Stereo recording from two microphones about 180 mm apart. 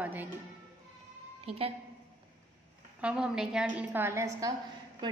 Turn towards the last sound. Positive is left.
turn(degrees=-25)  # may be behind; listen again after turning